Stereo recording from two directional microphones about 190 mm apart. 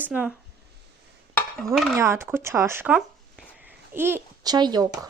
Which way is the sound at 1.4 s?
Centre (ahead or behind).